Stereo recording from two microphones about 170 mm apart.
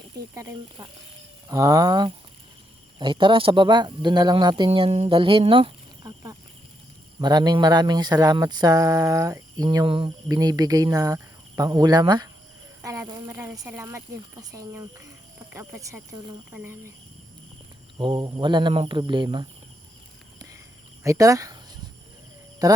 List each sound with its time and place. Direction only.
0.3 s speech: 20° right (ahead or behind)
17.9 s speech: 25° right (ahead or behind)
21.0 s speech: 20° right (ahead or behind)
22.6 s speech: 20° right (ahead or behind)